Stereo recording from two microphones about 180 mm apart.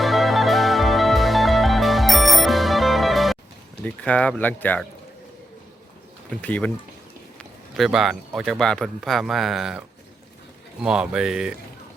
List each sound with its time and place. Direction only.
0.0 s music: centre (ahead or behind)
3.8 s speech: 5° left (ahead or behind)
6.3 s a man's voice: 10° left (ahead or behind)
10.8 s a man's voice: 5° right (ahead or behind)